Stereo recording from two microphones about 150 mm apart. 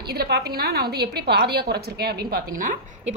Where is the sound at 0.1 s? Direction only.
90° right.